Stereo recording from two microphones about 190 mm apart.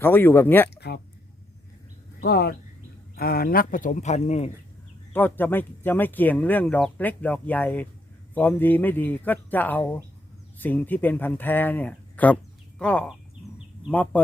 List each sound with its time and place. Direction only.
0.0 s speech: 10° left (ahead or behind)
0.8 s speech: 60° left (ahead or behind)
2.2 s speech: 55° left (ahead or behind); by 4.5 s 35° left (ahead or behind)
5.1 s speech: 10° left (ahead or behind)